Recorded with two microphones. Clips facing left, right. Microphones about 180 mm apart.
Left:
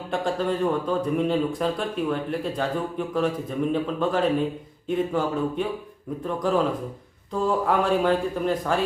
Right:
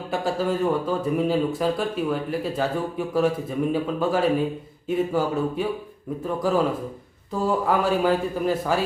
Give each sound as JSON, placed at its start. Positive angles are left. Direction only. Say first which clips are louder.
{"t": 0.1, "sound": "speech", "louder": "right 1 dB", "side_deg": -5}